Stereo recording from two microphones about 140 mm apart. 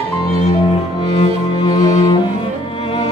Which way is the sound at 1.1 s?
35° left (ahead or behind).